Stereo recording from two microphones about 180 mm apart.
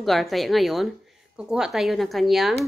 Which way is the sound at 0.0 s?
Centre (ahead or behind).